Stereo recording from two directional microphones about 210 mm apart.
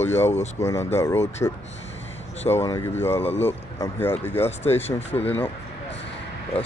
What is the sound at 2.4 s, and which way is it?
Speech, 15° left (ahead or behind).